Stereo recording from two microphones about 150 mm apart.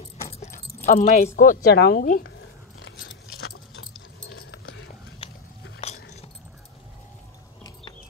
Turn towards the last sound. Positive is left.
turn(degrees=45)  # may be behind; listen again after turning